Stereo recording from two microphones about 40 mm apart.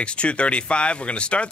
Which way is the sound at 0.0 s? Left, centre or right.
Left.